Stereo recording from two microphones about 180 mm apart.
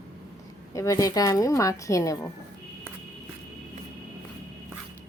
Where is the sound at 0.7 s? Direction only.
15° left (ahead or behind).